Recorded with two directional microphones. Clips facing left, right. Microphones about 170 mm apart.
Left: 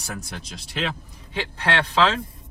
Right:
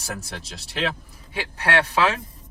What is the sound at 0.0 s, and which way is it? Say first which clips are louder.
Speech: right 1 dB; centre (ahead or behind).